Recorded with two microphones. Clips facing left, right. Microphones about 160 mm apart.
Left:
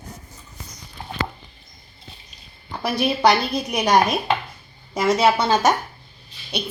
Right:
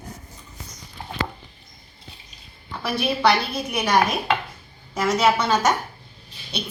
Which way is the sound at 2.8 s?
40° left (ahead or behind).